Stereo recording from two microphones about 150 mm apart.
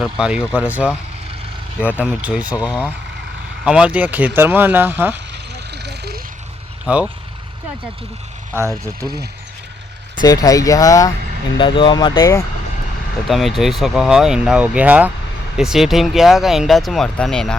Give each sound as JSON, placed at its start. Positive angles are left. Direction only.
{"t": 0.0, "sound": "speech", "side_deg": -5}
{"t": 2.0, "sound": "speech", "side_deg": -10}
{"t": 5.3, "sound": "a sound", "side_deg": -90}
{"t": 6.8, "sound": "speech", "side_deg": -5}
{"t": 8.8, "sound": "speech", "side_deg": -20}
{"t": 10.2, "sound": "speech", "side_deg": 25}
{"t": 13.2, "sound": "speech", "side_deg": 0}